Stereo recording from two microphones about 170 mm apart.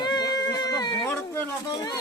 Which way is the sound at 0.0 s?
25° left (ahead or behind).